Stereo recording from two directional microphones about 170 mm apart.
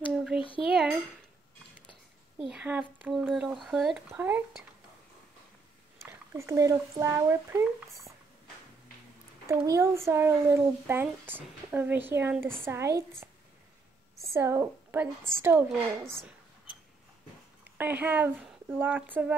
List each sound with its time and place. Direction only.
0.1 s a sound: centre (ahead or behind)
0.4 s a sound: 30° left (ahead or behind)
2.4 s speech: 5° right (ahead or behind)
4.1 s a child's voice: 10° right (ahead or behind)
6.3 s a child's voice: 20° right (ahead or behind)
9.7 s a child's voice: 15° right (ahead or behind)
14.2 s a child's voice: 15° right (ahead or behind)
17.7 s a child's voice: 10° right (ahead or behind)